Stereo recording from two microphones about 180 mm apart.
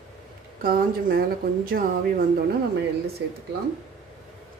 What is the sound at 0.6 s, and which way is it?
Speech, 55° right (ahead or behind).